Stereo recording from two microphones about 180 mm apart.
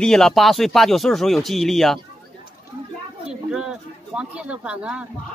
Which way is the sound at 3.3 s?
5° right (ahead or behind).